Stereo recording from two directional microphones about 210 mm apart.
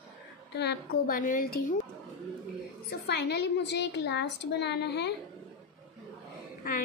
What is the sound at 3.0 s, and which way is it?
A woman's voice, 55° left (ahead or behind).